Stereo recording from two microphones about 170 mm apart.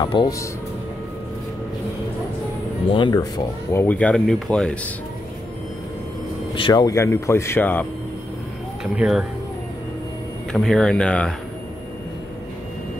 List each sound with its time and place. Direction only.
0.0 s speech: 25° left (ahead or behind)
2.9 s speech: 25° left (ahead or behind)
3.8 s speech: 10° left (ahead or behind)
6.5 s speech: 25° left (ahead or behind)
8.9 s speech: 5° right (ahead or behind)
10.5 s speech: 5° left (ahead or behind)